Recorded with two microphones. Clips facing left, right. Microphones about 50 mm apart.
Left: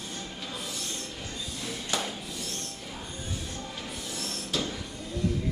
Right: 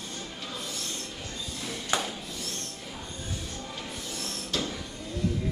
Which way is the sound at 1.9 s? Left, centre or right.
Right.